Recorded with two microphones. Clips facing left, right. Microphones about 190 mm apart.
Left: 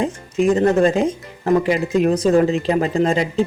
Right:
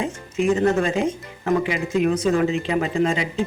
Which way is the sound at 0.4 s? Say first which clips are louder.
Left 4 dB; 35° left (ahead or behind).